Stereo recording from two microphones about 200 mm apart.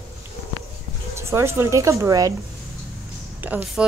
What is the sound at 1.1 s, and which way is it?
Speech, 15° right (ahead or behind).